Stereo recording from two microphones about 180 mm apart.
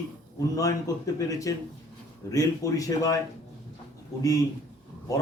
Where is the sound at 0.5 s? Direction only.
20° left (ahead or behind).